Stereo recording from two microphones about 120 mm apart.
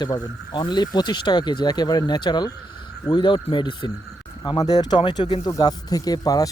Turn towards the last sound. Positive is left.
turn(degrees=30)  # may be behind; listen again after turning